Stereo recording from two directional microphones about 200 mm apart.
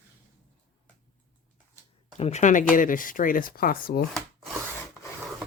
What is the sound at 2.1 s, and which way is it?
Speech, 35° left (ahead or behind).